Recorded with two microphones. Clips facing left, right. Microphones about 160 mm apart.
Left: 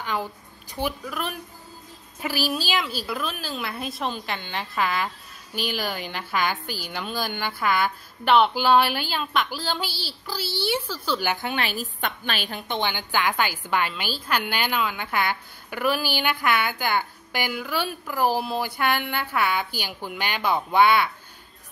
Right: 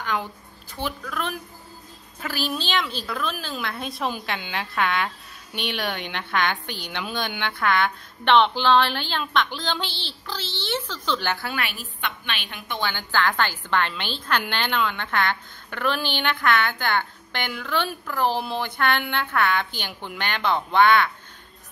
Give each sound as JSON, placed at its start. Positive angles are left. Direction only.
{"t": 0.7, "sound": "a woman's voice", "side_deg": 10}
{"t": 11.6, "sound": "a woman's voice", "side_deg": 40}
{"t": 12.9, "sound": "a woman's voice", "side_deg": 15}